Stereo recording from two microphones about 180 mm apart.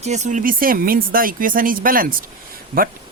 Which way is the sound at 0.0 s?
40° right (ahead or behind).